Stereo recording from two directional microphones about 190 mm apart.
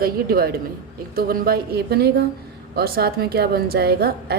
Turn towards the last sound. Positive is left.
turn(degrees=-55)  # may be behind; listen again after turning